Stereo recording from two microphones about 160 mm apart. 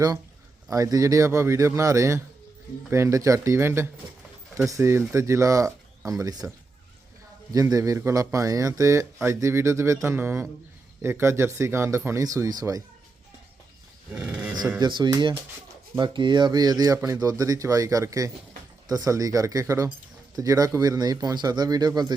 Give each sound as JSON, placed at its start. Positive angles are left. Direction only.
{"t": 0.7, "sound": "speech", "side_deg": -20}
{"t": 7.5, "sound": "speech", "side_deg": -20}
{"t": 14.1, "sound": "speech", "side_deg": -5}
{"t": 14.8, "sound": "speech", "side_deg": -30}